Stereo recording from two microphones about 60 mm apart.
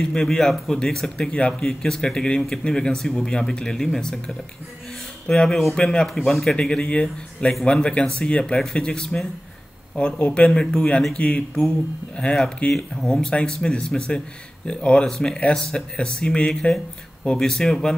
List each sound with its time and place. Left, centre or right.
0.0 s speech: centre
6.0 s speech: centre; by 12.3 s left
12.7 s speech: centre